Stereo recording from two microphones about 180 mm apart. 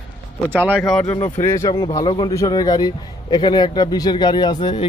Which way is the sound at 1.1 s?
15° left (ahead or behind).